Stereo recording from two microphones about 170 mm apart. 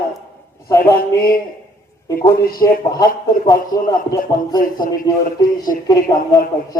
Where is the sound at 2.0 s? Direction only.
15° left (ahead or behind).